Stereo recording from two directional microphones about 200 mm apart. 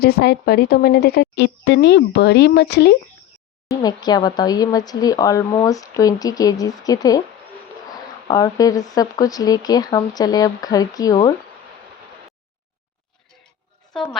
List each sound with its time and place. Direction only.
0.0 s speech: 50° left (ahead or behind)
3.7 s speech: 20° left (ahead or behind)
8.3 s speech: 20° left (ahead or behind)
13.9 s a woman's voice: centre (ahead or behind)